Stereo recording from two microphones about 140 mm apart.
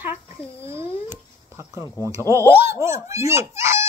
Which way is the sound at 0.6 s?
20° right (ahead or behind).